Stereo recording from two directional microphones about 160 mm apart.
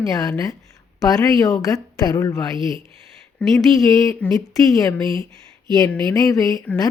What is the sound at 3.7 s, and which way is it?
Speech, 20° left (ahead or behind).